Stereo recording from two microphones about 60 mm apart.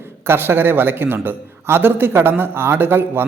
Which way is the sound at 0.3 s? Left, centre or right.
Right.